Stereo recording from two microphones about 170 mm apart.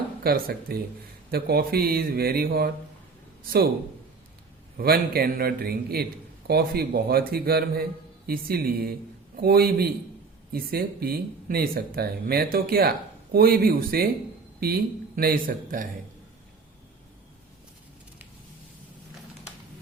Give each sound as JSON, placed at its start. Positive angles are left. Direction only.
{"t": 0.2, "sound": "speech", "side_deg": -65}
{"t": 4.8, "sound": "speech", "side_deg": -65}